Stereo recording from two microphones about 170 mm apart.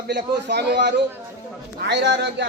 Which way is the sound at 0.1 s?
75° right (ahead or behind).